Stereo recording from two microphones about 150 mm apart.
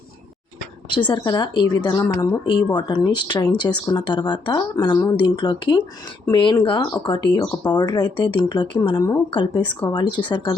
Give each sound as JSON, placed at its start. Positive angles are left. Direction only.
{"t": 0.9, "sound": "speech", "side_deg": 30}